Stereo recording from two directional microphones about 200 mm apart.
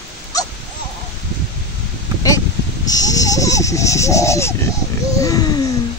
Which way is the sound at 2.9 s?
20° left (ahead or behind).